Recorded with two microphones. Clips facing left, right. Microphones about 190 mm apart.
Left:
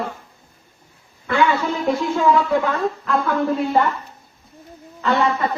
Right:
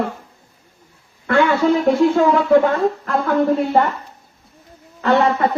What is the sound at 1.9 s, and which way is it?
Speech, 55° right (ahead or behind).